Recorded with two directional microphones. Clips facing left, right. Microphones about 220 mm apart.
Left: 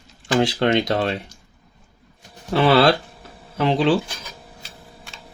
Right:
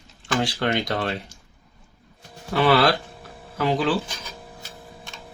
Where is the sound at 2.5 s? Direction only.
25° left (ahead or behind).